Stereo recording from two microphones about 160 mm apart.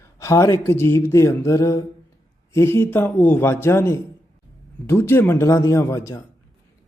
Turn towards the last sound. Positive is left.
turn(degrees=20)  # may be behind; listen again after turning